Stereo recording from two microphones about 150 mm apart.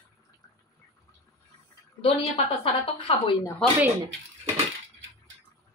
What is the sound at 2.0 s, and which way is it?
A woman's voice, 40° left (ahead or behind).